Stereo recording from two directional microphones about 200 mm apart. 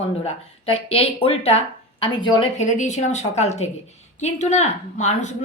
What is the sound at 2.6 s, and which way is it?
A woman's voice, 40° left (ahead or behind).